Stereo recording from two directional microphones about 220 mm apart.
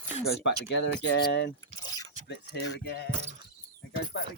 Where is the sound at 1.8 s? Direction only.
15° left (ahead or behind).